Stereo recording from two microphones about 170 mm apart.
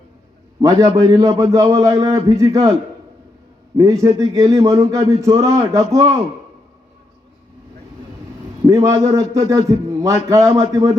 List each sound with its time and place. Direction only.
0.6 s speech: 20° right (ahead or behind)
3.8 s speech: 20° right (ahead or behind)
8.6 s speech: 20° right (ahead or behind)